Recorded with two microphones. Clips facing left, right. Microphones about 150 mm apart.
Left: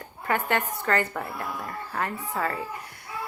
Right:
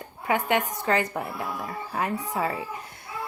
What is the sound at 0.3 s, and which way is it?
A woman's voice, 15° right (ahead or behind).